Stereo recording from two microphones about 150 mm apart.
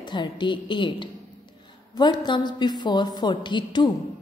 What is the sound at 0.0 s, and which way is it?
A woman's voice, 30° left (ahead or behind).